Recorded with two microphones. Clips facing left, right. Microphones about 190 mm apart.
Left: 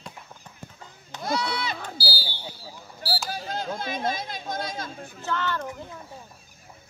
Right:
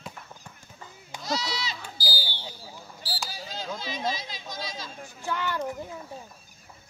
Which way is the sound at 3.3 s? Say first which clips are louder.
Left 5 dB; 55° left (ahead or behind).